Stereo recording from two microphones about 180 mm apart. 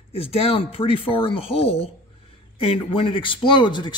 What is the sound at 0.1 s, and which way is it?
Speech, 35° left (ahead or behind).